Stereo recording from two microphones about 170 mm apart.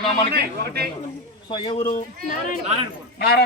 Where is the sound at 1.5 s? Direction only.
30° left (ahead or behind).